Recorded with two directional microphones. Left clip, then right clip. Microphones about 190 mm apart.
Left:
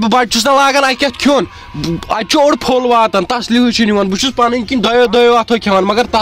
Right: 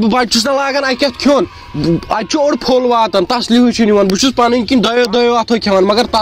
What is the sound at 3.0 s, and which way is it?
Speech, 20° left (ahead or behind).